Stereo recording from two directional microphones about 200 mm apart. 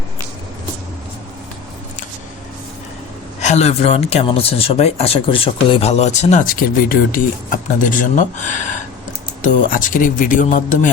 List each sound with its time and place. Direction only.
3.4 s speech: 30° left (ahead or behind)